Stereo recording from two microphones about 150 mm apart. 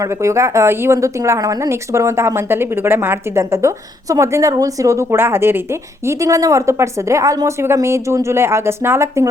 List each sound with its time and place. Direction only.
0.0 s speech: 20° right (ahead or behind)